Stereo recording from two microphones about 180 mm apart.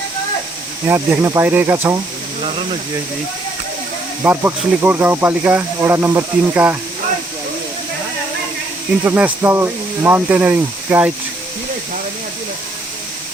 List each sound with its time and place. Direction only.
0.9 s speech: 15° right (ahead or behind)
2.4 s speech: 30° right (ahead or behind)
4.2 s speech: 10° right (ahead or behind)
9.0 s speech: 10° right (ahead or behind)